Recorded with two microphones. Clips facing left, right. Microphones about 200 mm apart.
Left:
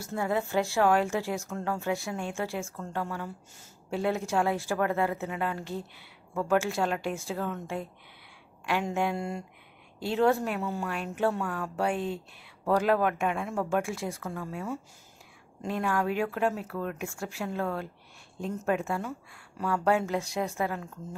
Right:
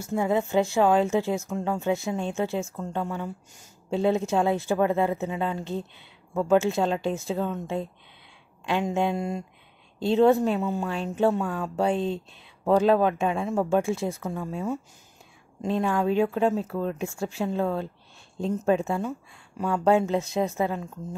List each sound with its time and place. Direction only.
0.0 s speech: 20° right (ahead or behind)